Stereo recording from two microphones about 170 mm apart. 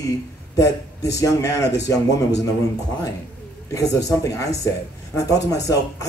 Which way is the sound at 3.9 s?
20° left (ahead or behind).